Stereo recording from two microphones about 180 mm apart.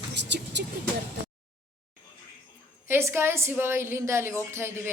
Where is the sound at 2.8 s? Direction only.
15° right (ahead or behind).